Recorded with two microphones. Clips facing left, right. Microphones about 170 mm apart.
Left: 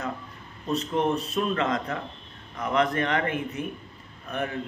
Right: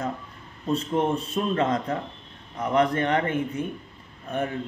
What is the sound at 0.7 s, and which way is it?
Speech, 30° right (ahead or behind).